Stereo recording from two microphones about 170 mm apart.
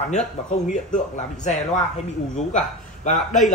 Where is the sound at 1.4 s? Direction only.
45° left (ahead or behind).